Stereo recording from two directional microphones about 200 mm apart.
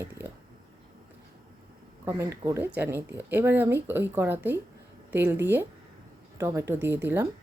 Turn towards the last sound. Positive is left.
turn(degrees=-10)  # may be behind; listen again after turning